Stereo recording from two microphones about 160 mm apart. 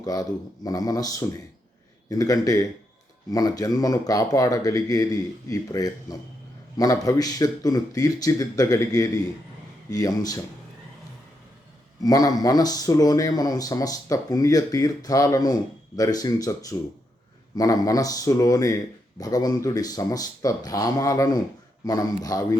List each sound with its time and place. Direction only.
0.0 s speech: 25° left (ahead or behind)
12.0 s speech: 25° left (ahead or behind)